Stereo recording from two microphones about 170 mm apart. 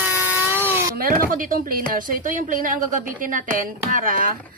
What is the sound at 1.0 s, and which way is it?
Speech, 60° right (ahead or behind).